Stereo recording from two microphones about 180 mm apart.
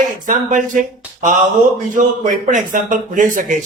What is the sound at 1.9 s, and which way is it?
Speech, 45° right (ahead or behind).